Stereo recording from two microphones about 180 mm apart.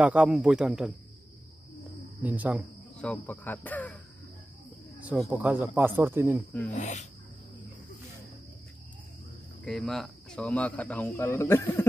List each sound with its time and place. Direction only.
0.0 s a man's voice: 5° right (ahead or behind)
2.2 s speech: 10° right (ahead or behind)
3.0 s speech: 10° left (ahead or behind)
5.0 s speech: 5° right (ahead or behind)
6.7 s speech: 40° left (ahead or behind)
9.7 s speech: 5° left (ahead or behind)